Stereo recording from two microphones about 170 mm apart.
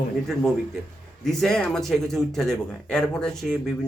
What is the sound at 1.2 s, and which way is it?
Speech, 5° left (ahead or behind).